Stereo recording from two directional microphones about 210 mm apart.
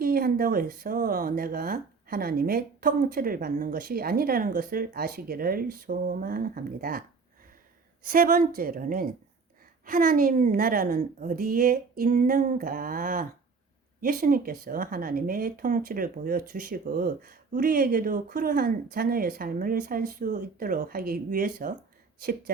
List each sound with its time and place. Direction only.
0.0 s speech: 45° right (ahead or behind)
8.0 s speech: 45° right (ahead or behind)